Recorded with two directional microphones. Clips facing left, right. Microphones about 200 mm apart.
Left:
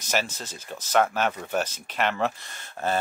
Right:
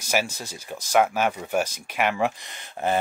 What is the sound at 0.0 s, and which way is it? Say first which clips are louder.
Speech: right 2 dB; 10° right (ahead or behind).